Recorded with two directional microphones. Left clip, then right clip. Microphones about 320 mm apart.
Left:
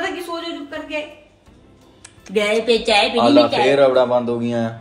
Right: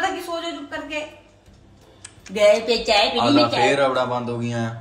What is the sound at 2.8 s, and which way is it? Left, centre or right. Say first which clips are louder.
Speech: left 2 dB; centre.